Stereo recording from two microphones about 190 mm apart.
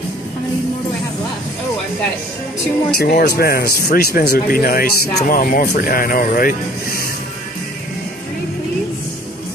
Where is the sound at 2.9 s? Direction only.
55° left (ahead or behind).